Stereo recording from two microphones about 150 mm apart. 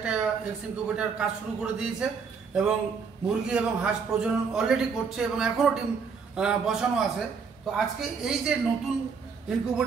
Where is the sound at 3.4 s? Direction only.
5° right (ahead or behind).